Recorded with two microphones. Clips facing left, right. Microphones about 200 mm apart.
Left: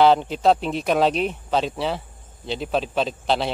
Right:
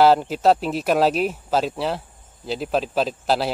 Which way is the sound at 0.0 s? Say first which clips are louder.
Right 1 dB; 5° right (ahead or behind).